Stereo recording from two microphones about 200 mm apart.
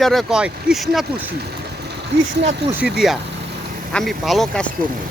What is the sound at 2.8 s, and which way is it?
Speech, 5° right (ahead or behind).